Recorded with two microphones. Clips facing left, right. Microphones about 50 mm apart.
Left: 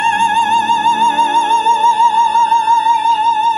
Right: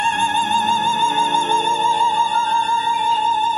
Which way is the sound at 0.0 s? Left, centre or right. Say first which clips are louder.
Left 6 dB; left.